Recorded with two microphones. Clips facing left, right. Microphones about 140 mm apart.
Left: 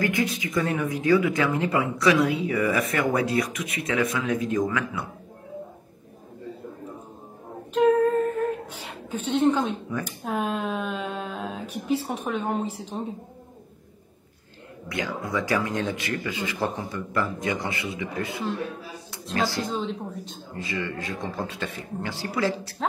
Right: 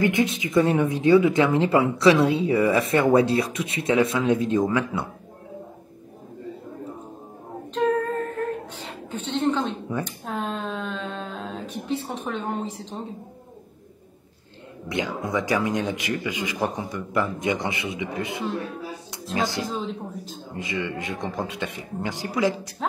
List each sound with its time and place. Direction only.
0.0 s speech: 25° right (ahead or behind)
8.7 s a sound: 10° left (ahead or behind)
10.0 s speech: 10° left (ahead or behind)
14.9 s speech: 20° right (ahead or behind)
19.6 s a woman's voice: centre (ahead or behind)
20.5 s a man's voice: 20° right (ahead or behind)